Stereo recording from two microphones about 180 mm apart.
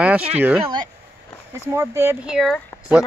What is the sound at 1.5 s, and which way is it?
Speech, 15° right (ahead or behind).